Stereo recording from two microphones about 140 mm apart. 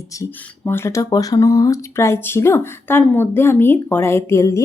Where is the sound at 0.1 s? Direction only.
15° left (ahead or behind).